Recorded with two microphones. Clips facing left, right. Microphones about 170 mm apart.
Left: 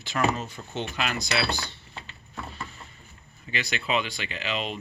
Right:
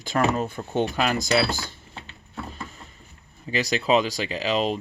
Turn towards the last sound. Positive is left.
turn(degrees=-40)  # may be behind; listen again after turning